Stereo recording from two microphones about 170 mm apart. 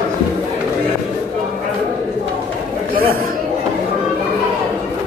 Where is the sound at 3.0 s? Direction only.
60° right (ahead or behind).